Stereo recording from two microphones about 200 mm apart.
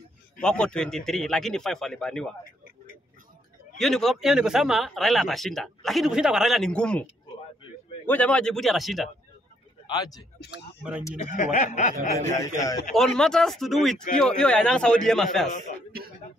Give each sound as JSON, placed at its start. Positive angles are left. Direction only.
{"t": 0.4, "sound": "speech", "side_deg": 5}
{"t": 3.7, "sound": "speech", "side_deg": 0}
{"t": 8.1, "sound": "speech", "side_deg": 5}
{"t": 9.8, "sound": "speech", "side_deg": 20}
{"t": 10.8, "sound": "speech", "side_deg": -5}
{"t": 11.1, "sound": "speech", "side_deg": 40}
{"t": 12.5, "sound": "a man's voice", "side_deg": 20}
{"t": 12.9, "sound": "speech", "side_deg": 5}